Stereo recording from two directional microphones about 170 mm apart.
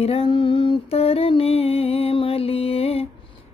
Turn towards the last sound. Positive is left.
turn(degrees=35)  # may be behind; listen again after turning